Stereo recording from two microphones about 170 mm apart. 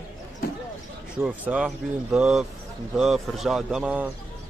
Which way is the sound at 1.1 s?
5° right (ahead or behind).